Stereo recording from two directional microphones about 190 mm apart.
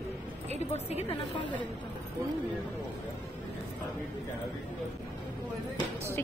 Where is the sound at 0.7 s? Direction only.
35° left (ahead or behind).